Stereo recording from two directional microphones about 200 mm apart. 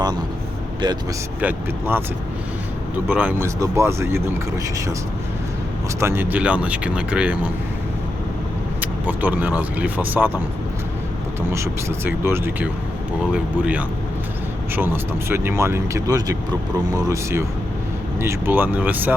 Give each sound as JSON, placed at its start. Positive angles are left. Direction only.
{"t": 1.4, "sound": "speech", "side_deg": -10}
{"t": 3.1, "sound": "speech", "side_deg": -10}
{"t": 6.0, "sound": "speech", "side_deg": -10}
{"t": 8.8, "sound": "speech", "side_deg": -10}
{"t": 11.5, "sound": "speech", "side_deg": -15}